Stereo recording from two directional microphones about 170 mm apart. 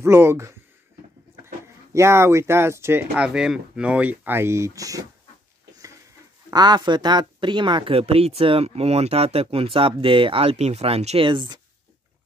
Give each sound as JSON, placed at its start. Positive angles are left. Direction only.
{"t": 0.0, "sound": "speech", "side_deg": -15}
{"t": 2.0, "sound": "speech", "side_deg": -15}
{"t": 6.5, "sound": "speech", "side_deg": -25}